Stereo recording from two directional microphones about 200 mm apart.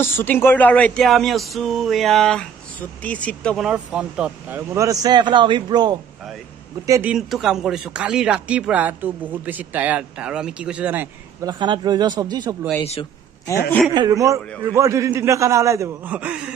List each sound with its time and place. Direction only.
0.0 s speech: 10° left (ahead or behind); by 5.9 s 20° right (ahead or behind)
6.9 s speech: 5° right (ahead or behind)
11.4 s a man's voice: 25° right (ahead or behind)
13.9 s speech: 15° right (ahead or behind)